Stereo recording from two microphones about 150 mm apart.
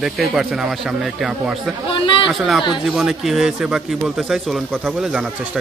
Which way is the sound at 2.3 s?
Centre (ahead or behind).